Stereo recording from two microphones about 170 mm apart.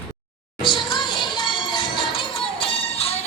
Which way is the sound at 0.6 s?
25° left (ahead or behind).